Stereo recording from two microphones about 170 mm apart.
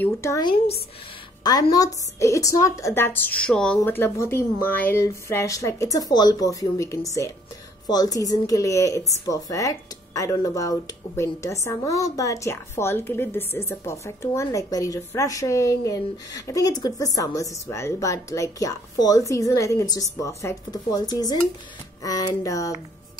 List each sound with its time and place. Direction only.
0.0 s a woman's voice: 15° left (ahead or behind)